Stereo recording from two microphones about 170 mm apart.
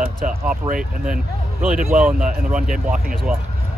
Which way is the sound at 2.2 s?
50° right (ahead or behind).